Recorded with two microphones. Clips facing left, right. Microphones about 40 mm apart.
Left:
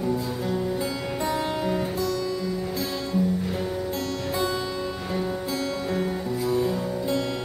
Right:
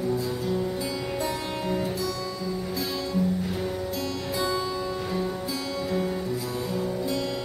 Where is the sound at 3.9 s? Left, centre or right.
Left; by 5.4 s centre.